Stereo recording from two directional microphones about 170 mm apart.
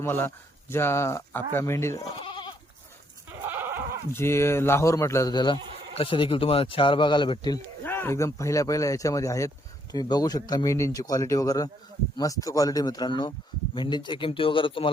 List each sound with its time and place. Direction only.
0.0 s speech: 15° left (ahead or behind)
2.2 s goat: 25° left (ahead or behind)
3.4 s goat: 15° right (ahead or behind)
4.1 s speech: 15° left (ahead or behind)
7.9 s speech: 15° left (ahead or behind); by 14.8 s 30° left (ahead or behind)